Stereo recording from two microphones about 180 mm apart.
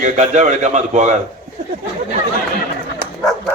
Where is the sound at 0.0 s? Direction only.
40° right (ahead or behind).